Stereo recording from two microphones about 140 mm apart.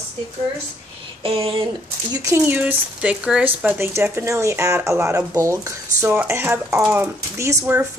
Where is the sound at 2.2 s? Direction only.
15° right (ahead or behind).